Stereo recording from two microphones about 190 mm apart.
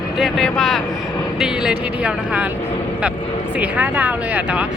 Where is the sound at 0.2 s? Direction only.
Centre (ahead or behind).